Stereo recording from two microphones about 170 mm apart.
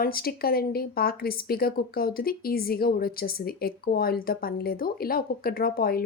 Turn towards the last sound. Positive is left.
turn(degrees=60)  # may be behind; listen again after turning